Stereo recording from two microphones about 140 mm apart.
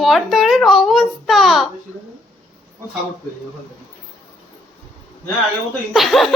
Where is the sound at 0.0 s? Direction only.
Centre (ahead or behind).